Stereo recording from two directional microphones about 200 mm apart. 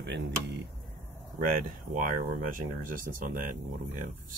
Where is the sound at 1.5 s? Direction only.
45° right (ahead or behind).